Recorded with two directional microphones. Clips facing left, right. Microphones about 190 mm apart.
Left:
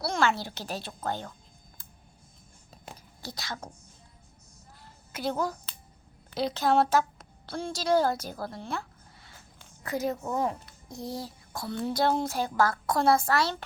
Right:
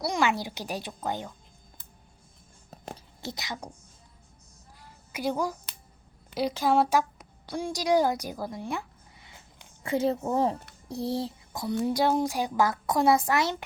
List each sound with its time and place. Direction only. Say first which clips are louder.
0.0 s a woman's voice: right 1 dB; 15° right (ahead or behind)
3.2 s speech: right 1 dB; 20° right (ahead or behind)
4.8 s a sound: right 2 dB; 10° right (ahead or behind)
6.3 s a woman's voice: right 1 dB; 10° right (ahead or behind)